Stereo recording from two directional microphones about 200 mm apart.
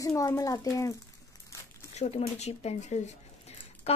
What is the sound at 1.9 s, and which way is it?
Speech, 35° left (ahead or behind).